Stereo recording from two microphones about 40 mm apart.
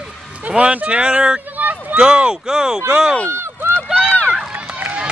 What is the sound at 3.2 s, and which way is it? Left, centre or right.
Run, right.